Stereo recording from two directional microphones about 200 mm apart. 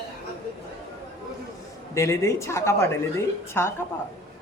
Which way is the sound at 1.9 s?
15° left (ahead or behind).